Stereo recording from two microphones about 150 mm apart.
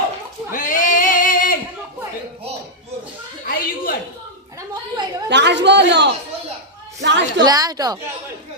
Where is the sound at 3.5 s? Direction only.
70° left (ahead or behind).